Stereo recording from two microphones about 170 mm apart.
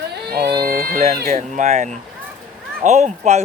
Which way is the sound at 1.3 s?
40° right (ahead or behind).